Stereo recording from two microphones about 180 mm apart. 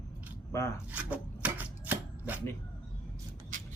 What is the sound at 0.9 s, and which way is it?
Chopping, 10° right (ahead or behind).